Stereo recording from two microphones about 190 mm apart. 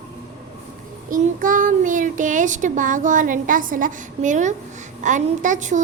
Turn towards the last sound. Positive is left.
turn(degrees=-40)  # may be behind; listen again after turning